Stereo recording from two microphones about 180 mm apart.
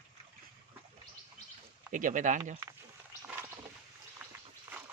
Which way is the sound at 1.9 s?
45° right (ahead or behind).